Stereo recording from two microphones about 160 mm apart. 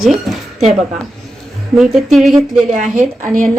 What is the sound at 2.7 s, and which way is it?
Speech, 55° right (ahead or behind).